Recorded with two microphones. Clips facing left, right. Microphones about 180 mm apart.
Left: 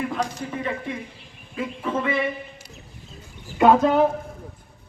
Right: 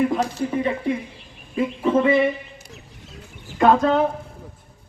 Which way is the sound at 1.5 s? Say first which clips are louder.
Right 7 dB; 25° right (ahead or behind).